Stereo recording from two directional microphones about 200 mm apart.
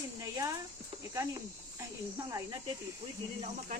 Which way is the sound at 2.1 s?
15° right (ahead or behind).